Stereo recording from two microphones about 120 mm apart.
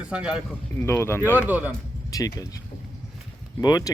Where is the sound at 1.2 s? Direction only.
15° right (ahead or behind).